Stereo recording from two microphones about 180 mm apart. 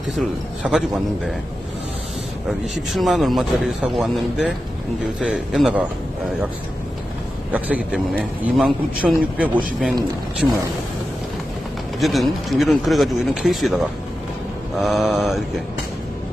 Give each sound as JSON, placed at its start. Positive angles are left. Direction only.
{"t": 0.2, "sound": "a man's voice", "side_deg": 0}
{"t": 2.5, "sound": "a man's voice", "side_deg": 0}
{"t": 7.5, "sound": "speech", "side_deg": -10}
{"t": 11.9, "sound": "a man's voice", "side_deg": 0}